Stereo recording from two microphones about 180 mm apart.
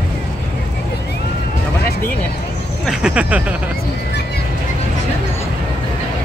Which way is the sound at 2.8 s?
5° right (ahead or behind).